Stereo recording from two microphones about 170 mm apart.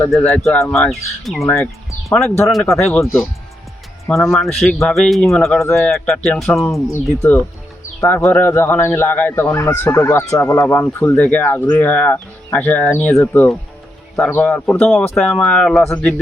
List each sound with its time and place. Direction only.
0.0 s speech: 10° left (ahead or behind)
1.5 s speech: 15° left (ahead or behind)
2.4 s speech: centre (ahead or behind)
3.0 s speech: 15° left (ahead or behind)
15.8 s speech: 15° left (ahead or behind)